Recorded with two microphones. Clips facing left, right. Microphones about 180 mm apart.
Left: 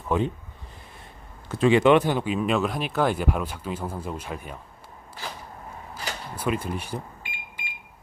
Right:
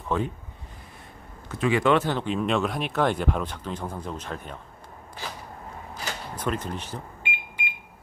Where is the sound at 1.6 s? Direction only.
20° left (ahead or behind).